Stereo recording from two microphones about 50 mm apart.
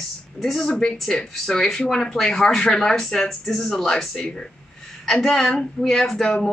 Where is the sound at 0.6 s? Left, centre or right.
Centre.